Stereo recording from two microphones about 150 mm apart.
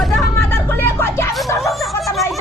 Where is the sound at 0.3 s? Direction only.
15° left (ahead or behind).